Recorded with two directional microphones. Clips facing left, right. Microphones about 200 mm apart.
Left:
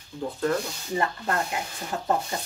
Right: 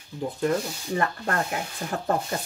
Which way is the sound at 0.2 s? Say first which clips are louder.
Right 1 dB; 15° right (ahead or behind).